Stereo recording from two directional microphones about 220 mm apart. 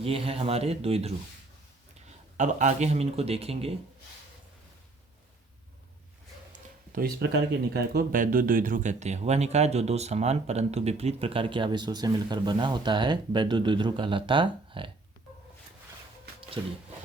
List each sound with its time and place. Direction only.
0.0 s speech: 25° right (ahead or behind)
6.9 s speech: 40° right (ahead or behind); by 14.8 s 20° right (ahead or behind)
16.6 s speech: 20° right (ahead or behind)